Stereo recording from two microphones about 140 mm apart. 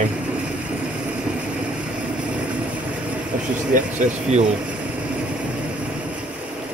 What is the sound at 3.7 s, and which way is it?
Speech, 60° right (ahead or behind).